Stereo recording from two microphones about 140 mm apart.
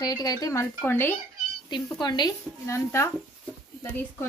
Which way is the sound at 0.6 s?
15° left (ahead or behind).